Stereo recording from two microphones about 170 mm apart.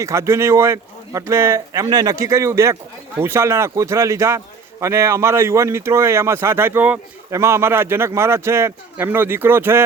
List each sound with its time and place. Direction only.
0.0 s a man's voice: 15° right (ahead or behind)